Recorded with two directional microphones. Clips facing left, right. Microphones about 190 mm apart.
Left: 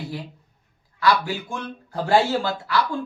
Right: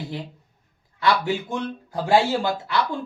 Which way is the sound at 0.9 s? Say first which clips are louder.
Even; 25° right (ahead or behind).